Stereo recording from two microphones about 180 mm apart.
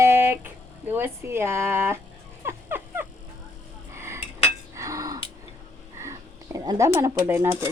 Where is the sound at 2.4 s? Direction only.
15° right (ahead or behind).